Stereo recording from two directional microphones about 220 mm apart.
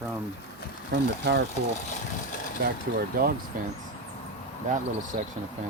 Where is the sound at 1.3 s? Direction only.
50° right (ahead or behind).